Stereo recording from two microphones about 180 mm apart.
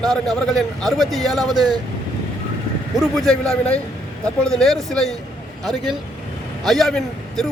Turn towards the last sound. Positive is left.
turn(degrees=0)  # may be behind; listen again after turning